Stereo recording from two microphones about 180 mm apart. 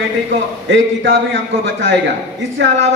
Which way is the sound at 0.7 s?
90° right.